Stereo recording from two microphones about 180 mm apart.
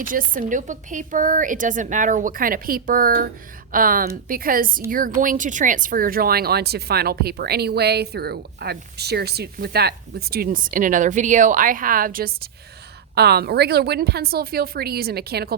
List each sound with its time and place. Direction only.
0.0 s a woman's voice: 50° right (ahead or behind)
13.1 s speech: 65° right (ahead or behind)